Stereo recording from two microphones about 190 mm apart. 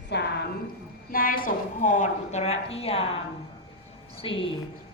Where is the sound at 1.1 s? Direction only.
50° left (ahead or behind); by 3.0 s 30° left (ahead or behind).